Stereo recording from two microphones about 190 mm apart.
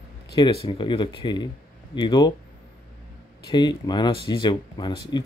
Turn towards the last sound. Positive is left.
turn(degrees=25)  # may be behind; listen again after turning